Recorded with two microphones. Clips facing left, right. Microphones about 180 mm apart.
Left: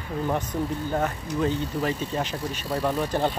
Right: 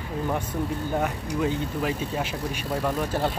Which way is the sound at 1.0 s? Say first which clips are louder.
Even; 10° right (ahead or behind).